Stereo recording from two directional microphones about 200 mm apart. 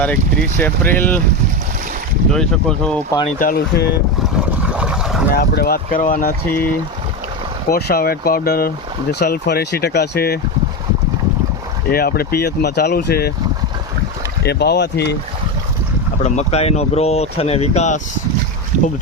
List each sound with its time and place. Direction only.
0.6 s speech: 10° left (ahead or behind)
2.3 s speech: 5° left (ahead or behind)
3.3 s speech: 45° left (ahead or behind)
4.7 s boat: 5° right (ahead or behind)
5.3 s speech: 50° left (ahead or behind)
7.7 s speech: 50° left (ahead or behind)
11.9 s speech: 50° left (ahead or behind)
14.4 s speech: 55° left (ahead or behind)
16.2 s speech: 35° left (ahead or behind)